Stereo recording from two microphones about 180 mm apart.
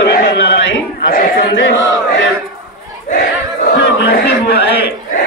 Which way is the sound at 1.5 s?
80° left.